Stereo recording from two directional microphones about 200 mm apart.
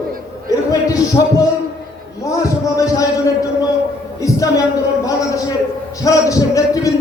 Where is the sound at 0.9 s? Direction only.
15° left (ahead or behind).